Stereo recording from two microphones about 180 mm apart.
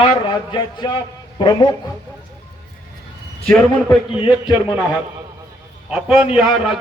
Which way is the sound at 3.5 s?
5° left (ahead or behind).